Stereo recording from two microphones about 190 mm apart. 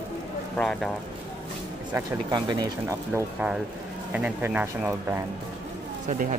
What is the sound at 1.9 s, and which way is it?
Speech, 20° right (ahead or behind).